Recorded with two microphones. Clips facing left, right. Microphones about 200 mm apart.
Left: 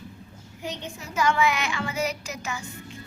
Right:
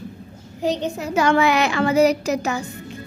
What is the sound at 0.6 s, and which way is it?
Speech, 35° right (ahead or behind).